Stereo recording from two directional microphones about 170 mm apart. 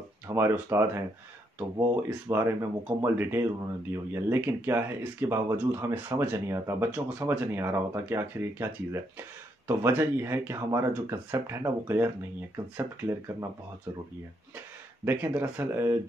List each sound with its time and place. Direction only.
0.3 s speech: 15° right (ahead or behind)
15.0 s speech: 10° right (ahead or behind)